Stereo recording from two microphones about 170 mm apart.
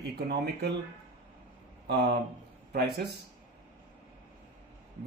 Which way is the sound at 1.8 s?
75° right (ahead or behind).